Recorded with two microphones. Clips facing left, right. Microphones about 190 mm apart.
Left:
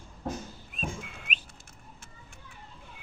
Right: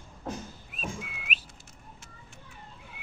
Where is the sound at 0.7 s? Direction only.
5° right (ahead or behind).